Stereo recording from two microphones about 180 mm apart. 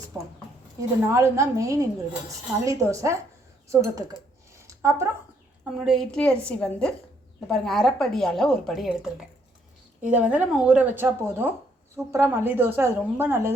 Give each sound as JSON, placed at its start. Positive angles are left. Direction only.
{"t": 0.1, "sound": "speech", "side_deg": -10}
{"t": 4.5, "sound": "a sound", "side_deg": -15}
{"t": 5.8, "sound": "a woman's voice", "side_deg": 0}
{"t": 10.1, "sound": "speech", "side_deg": -5}